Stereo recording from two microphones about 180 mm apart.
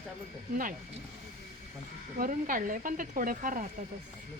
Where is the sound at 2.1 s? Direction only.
50° right (ahead or behind).